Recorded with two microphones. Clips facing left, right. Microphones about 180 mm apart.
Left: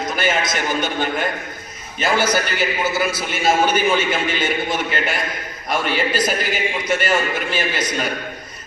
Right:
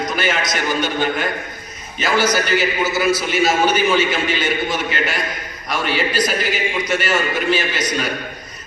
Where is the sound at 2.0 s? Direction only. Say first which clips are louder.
Right 1 dB; 55° left (ahead or behind).